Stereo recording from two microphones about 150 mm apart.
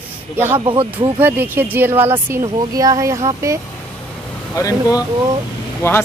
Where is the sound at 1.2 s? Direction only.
15° right (ahead or behind).